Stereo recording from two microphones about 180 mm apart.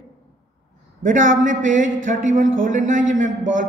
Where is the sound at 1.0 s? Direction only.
45° right (ahead or behind).